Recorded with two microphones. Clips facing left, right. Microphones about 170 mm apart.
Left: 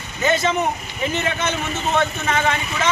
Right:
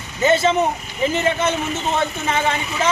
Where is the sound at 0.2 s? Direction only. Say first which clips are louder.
Right 3 dB; 30° right (ahead or behind).